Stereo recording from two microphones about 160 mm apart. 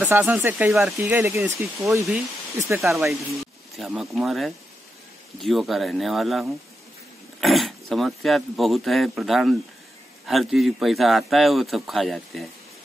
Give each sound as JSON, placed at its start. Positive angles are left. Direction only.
{"t": 0.0, "sound": "speech", "side_deg": -10}
{"t": 2.8, "sound": "speech", "side_deg": 0}